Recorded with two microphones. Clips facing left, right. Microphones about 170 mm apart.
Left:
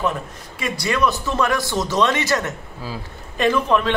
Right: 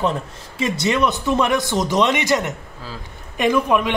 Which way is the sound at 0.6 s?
25° right (ahead or behind).